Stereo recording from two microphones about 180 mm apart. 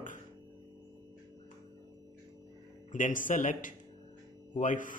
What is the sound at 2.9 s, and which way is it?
Speech, 45° left (ahead or behind).